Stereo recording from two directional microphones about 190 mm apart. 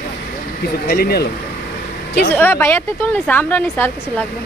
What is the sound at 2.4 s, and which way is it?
A woman's voice, 10° left (ahead or behind).